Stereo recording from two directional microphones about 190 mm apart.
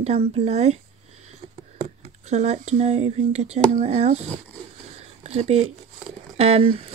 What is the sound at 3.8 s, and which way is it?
Speech, 35° right (ahead or behind).